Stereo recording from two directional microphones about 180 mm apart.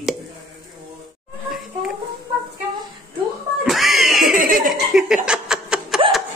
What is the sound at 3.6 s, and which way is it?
Cat, centre (ahead or behind).